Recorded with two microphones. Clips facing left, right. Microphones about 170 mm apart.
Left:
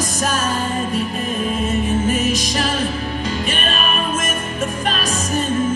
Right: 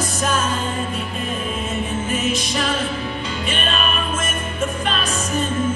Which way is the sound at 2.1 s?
40° left (ahead or behind).